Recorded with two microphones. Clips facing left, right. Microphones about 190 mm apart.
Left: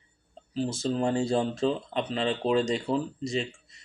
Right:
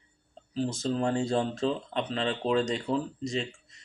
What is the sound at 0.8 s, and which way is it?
Speech, 5° left (ahead or behind).